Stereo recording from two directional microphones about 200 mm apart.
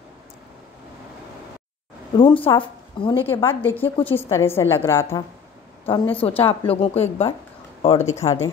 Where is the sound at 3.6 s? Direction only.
10° left (ahead or behind).